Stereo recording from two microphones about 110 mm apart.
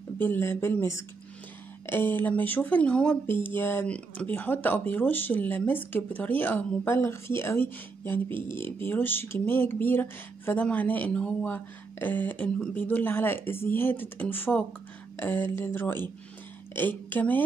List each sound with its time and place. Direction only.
0.2 s speech: 20° left (ahead or behind)